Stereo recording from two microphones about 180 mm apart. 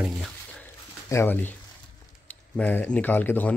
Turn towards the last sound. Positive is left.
turn(degrees=10)  # may be behind; listen again after turning